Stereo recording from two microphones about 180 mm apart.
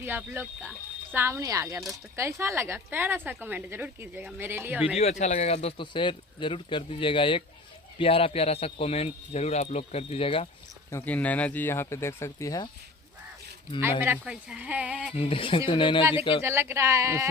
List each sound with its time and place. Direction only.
0.0 s speech: 10° right (ahead or behind)
4.9 s a man's voice: 40° left (ahead or behind)
10.9 s speech: 10° left (ahead or behind)
14.0 s speech: 10° right (ahead or behind)
15.1 s speech: 30° left (ahead or behind)
16.4 s speech: 15° right (ahead or behind)